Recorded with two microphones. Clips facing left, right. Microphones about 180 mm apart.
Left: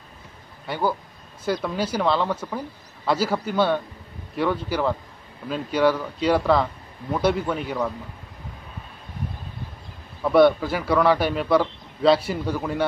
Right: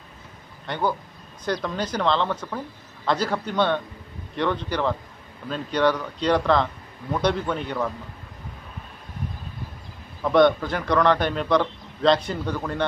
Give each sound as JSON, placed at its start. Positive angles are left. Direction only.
{"t": 0.7, "sound": "a man's voice", "side_deg": 5}
{"t": 10.2, "sound": "a man's voice", "side_deg": 5}